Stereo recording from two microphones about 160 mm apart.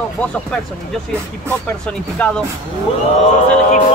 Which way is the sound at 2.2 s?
5° left (ahead or behind).